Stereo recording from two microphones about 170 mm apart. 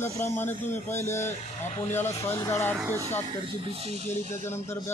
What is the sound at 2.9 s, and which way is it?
Speech, 15° right (ahead or behind).